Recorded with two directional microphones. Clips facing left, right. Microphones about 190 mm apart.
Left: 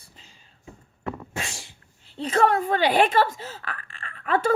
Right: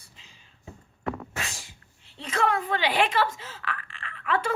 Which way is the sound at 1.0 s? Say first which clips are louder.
Even; 30° left (ahead or behind).